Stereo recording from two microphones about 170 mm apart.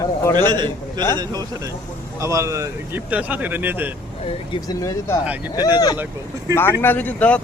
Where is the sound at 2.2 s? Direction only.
15° right (ahead or behind).